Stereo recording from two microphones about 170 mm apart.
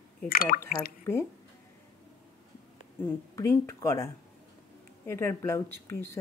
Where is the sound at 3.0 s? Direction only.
15° left (ahead or behind).